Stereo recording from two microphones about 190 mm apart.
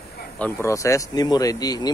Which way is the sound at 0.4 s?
15° left (ahead or behind).